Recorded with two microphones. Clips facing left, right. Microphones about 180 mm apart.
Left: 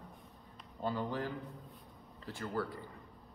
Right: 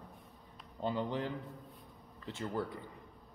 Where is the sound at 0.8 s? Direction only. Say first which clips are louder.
Right 1 dB; 20° right (ahead or behind).